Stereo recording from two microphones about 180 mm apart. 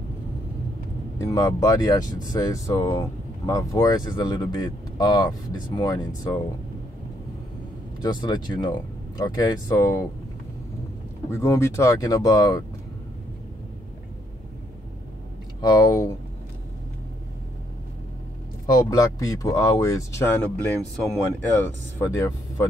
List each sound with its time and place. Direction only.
1.1 s speech: 15° left (ahead or behind)
8.0 s speech: 25° left (ahead or behind)
11.2 s speech: 15° left (ahead or behind)
15.6 s speech: 20° left (ahead or behind)
18.7 s speech: 20° left (ahead or behind)